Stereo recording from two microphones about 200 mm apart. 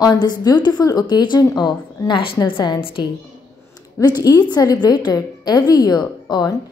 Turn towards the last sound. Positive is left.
turn(degrees=20)  # may be behind; listen again after turning